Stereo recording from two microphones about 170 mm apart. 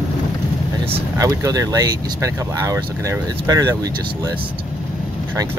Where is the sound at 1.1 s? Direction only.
20° right (ahead or behind).